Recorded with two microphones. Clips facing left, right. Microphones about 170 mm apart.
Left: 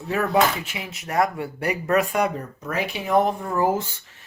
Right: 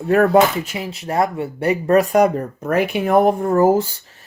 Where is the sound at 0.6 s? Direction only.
40° right (ahead or behind).